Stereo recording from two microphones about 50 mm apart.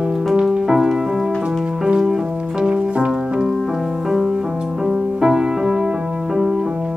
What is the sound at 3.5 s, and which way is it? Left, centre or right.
Music, centre.